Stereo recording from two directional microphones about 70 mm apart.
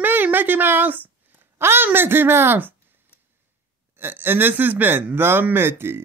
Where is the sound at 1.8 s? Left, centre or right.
Right.